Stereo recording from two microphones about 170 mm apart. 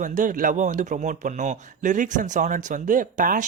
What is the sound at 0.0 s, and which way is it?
Speech, 50° right (ahead or behind).